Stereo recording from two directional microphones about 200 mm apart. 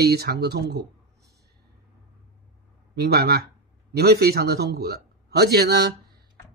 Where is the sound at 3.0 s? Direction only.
50° right (ahead or behind).